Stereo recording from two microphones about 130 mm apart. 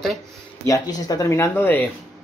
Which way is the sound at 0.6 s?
25° left (ahead or behind).